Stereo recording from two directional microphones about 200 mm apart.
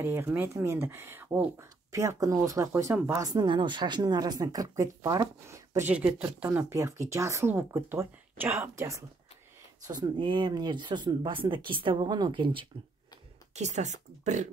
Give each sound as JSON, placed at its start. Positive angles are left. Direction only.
{"t": 0.0, "sound": "speech", "side_deg": -10}
{"t": 13.6, "sound": "speech", "side_deg": -35}